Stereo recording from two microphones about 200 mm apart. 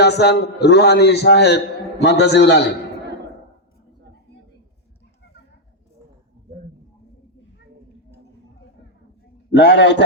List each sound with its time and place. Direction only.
0.0 s a man's voice: 55° left (ahead or behind)
9.6 s a man's voice: 60° left (ahead or behind)